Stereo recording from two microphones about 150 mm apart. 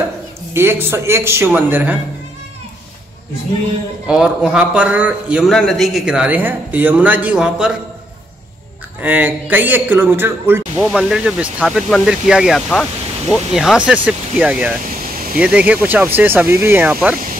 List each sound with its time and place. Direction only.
0.5 s speech: 15° right (ahead or behind)
4.1 s a man's voice: 5° right (ahead or behind)
9.0 s speech: 10° right (ahead or behind)
10.9 s a man's voice: centre (ahead or behind)